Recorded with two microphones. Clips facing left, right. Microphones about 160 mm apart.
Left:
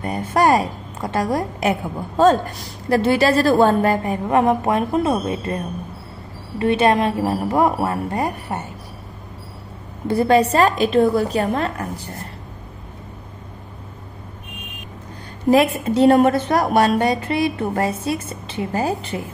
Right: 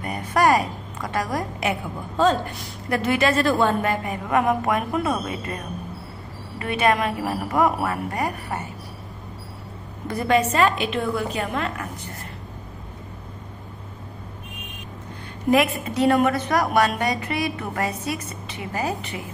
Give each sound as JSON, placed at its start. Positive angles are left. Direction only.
{"t": 0.0, "sound": "a woman's voice", "side_deg": 30}
{"t": 1.6, "sound": "a woman's voice", "side_deg": 40}
{"t": 6.6, "sound": "a woman's voice", "side_deg": 30}
{"t": 10.0, "sound": "a woman's voice", "side_deg": 30}
{"t": 15.5, "sound": "a woman's voice", "side_deg": 30}